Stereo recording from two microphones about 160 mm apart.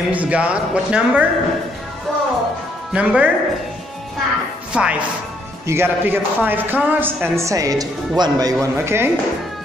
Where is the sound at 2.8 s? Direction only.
10° right (ahead or behind).